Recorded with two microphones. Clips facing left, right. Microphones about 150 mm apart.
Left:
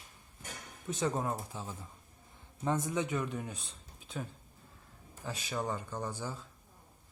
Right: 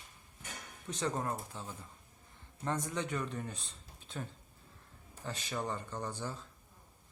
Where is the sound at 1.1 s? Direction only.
15° left (ahead or behind).